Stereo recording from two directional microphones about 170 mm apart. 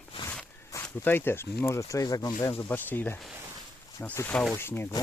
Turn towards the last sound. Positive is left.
turn(degrees=15)  # may be behind; listen again after turning